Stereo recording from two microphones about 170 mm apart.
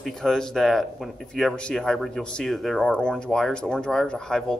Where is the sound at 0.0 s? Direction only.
Centre (ahead or behind).